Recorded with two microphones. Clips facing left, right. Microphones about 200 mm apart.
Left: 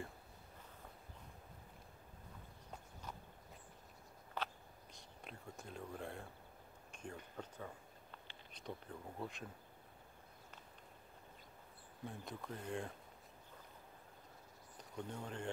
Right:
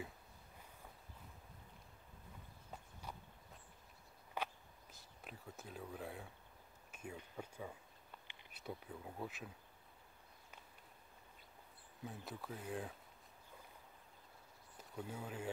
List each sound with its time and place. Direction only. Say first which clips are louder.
4.4 s a sound: right 1 dB; 15° right (ahead or behind)
12.0 s speech: left 1 dB; 5° right (ahead or behind)
14.8 s speech: left 1 dB; 5° right (ahead or behind)